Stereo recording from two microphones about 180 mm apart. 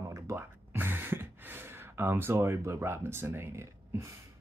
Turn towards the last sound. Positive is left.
turn(degrees=-15)  # may be behind; listen again after turning